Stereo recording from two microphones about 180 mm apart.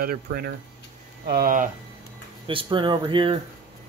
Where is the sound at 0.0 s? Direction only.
55° right (ahead or behind).